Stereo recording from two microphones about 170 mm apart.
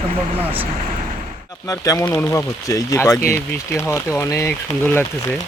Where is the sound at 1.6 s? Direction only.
20° left (ahead or behind).